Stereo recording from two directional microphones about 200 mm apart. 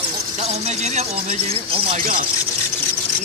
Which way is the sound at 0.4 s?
35° right (ahead or behind).